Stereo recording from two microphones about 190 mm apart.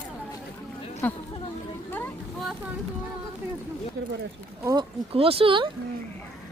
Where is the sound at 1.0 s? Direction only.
10° left (ahead or behind).